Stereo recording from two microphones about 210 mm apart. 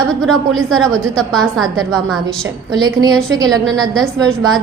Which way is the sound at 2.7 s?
20° right (ahead or behind).